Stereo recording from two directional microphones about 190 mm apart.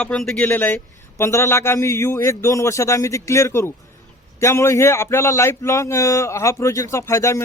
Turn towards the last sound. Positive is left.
turn(degrees=15)  # may be behind; listen again after turning